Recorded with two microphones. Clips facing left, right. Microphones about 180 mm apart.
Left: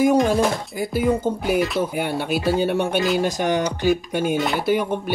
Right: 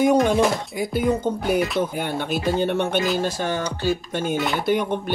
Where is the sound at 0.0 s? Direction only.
5° left (ahead or behind).